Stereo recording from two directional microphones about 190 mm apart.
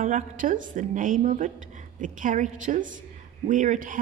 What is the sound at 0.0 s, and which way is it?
A woman's voice, 40° right (ahead or behind).